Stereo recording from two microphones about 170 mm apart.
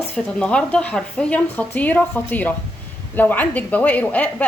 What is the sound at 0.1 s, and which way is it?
A woman's voice, 5° left (ahead or behind).